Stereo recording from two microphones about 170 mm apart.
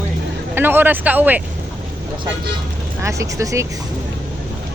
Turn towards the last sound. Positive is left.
turn(degrees=-20)  # may be behind; listen again after turning